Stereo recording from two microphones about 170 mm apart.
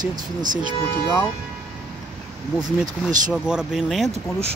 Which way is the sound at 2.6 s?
50° right (ahead or behind).